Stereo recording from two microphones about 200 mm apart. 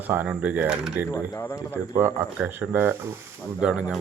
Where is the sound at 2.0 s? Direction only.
15° right (ahead or behind).